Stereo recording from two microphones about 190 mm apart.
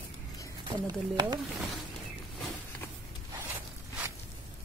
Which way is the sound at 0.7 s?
20° right (ahead or behind).